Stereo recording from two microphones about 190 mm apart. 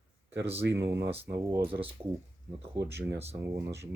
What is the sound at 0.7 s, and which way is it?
Speech, 15° right (ahead or behind).